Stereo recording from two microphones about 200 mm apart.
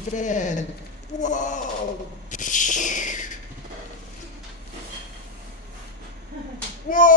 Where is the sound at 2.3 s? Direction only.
40° left (ahead or behind).